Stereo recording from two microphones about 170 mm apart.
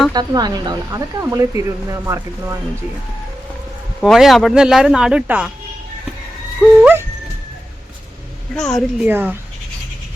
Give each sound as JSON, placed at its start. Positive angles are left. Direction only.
{"t": 0.1, "sound": "speech", "side_deg": -25}
{"t": 4.0, "sound": "speech", "side_deg": 0}
{"t": 6.6, "sound": "speech", "side_deg": -5}
{"t": 8.5, "sound": "speech", "side_deg": 5}
{"t": 9.0, "sound": "speech", "side_deg": -10}